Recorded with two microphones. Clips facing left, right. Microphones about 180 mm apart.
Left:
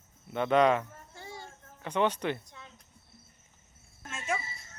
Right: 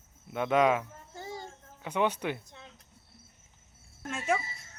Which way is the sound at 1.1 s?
40° right (ahead or behind).